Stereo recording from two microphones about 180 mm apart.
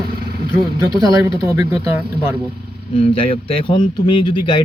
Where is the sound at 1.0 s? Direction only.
20° right (ahead or behind).